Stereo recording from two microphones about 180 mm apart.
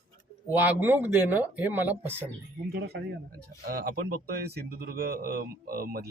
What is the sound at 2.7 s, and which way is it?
Speech, 65° right (ahead or behind).